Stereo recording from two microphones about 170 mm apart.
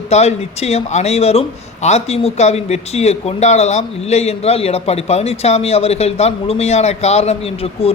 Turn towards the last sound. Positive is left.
turn(degrees=35)  # may be behind; listen again after turning